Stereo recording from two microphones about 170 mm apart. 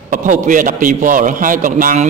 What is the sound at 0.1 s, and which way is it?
A man's voice, 50° right (ahead or behind).